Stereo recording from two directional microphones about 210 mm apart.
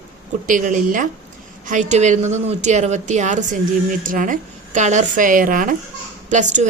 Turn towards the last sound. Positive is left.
turn(degrees=-35)  # may be behind; listen again after turning